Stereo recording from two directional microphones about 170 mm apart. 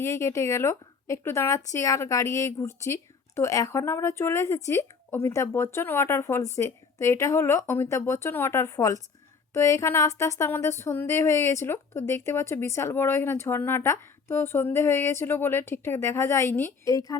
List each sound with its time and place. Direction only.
0.0 s speech: 15° left (ahead or behind)